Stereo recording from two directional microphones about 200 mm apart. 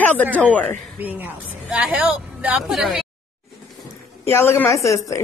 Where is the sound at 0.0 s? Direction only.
10° left (ahead or behind).